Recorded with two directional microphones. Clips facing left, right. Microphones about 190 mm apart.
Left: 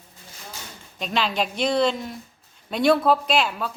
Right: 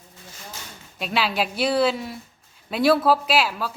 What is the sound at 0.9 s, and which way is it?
A woman's voice, 5° right (ahead or behind).